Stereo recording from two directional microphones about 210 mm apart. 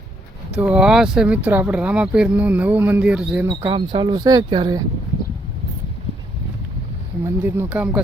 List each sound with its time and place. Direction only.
0.5 s speech: 5° right (ahead or behind)
3.4 s speech: 20° right (ahead or behind)
7.3 s speech: 10° right (ahead or behind)